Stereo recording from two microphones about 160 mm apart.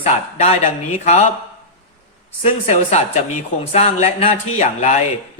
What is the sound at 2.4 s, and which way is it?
Speech, 45° left (ahead or behind).